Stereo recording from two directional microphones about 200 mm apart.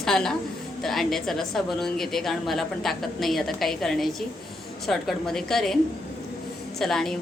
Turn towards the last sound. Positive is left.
turn(degrees=0)  # may be behind; listen again after turning